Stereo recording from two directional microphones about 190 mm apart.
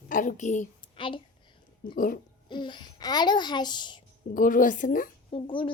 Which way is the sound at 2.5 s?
25° left (ahead or behind).